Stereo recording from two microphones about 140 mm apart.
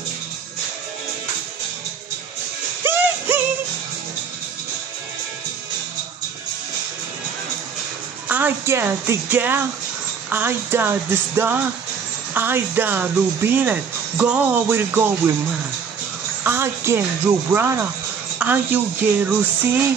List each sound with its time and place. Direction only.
2.8 s music: 15° right (ahead or behind)
8.3 s speech: 15° right (ahead or behind)
16.4 s speech: 20° right (ahead or behind)